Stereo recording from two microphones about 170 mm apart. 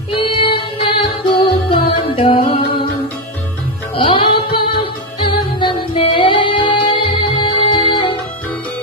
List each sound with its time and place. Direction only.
0.1 s music: 30° left (ahead or behind)
3.9 s music: 30° left (ahead or behind)
5.6 s music: 30° left (ahead or behind)